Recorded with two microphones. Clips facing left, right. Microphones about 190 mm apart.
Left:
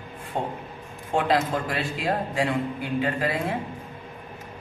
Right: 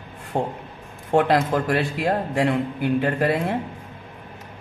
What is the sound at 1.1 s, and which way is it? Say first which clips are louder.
A man's voice: right 5 dB; 65° right (ahead or behind).